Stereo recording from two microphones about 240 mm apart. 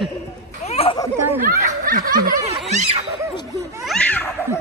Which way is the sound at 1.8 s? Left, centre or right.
Right.